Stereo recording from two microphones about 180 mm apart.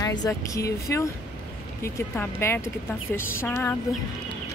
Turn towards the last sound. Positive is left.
turn(degrees=10)  # may be behind; listen again after turning